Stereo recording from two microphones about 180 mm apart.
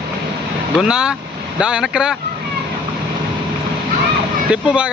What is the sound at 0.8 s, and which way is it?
Speech, 5° right (ahead or behind).